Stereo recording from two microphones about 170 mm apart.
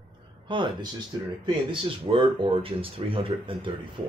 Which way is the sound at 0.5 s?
30° right (ahead or behind).